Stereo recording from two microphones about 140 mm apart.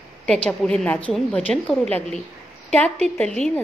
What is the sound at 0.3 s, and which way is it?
A woman's voice, 5° left (ahead or behind).